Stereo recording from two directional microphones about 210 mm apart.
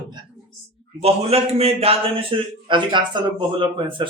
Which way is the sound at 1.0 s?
30° right (ahead or behind).